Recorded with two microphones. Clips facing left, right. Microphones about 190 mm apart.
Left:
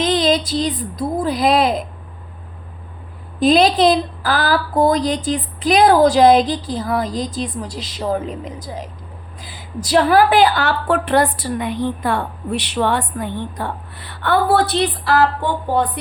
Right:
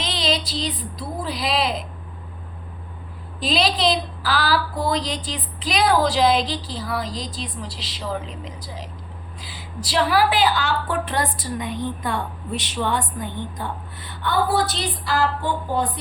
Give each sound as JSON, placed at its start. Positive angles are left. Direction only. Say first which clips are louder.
{"t": 0.0, "sound": "a woman's voice", "louder": "left 9 dB", "side_deg": 50}
{"t": 3.4, "sound": "a woman's voice", "louder": "left 8 dB", "side_deg": 50}